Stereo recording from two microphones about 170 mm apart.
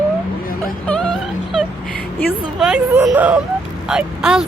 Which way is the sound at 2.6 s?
5° right (ahead or behind).